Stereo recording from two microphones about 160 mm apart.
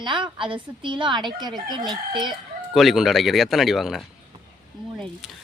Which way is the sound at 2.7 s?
Centre (ahead or behind).